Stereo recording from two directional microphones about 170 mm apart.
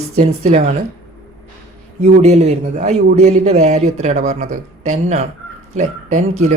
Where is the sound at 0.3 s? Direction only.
40° right (ahead or behind).